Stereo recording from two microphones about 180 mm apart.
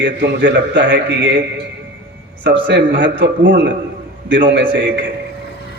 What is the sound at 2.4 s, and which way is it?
A man's voice, 80° right.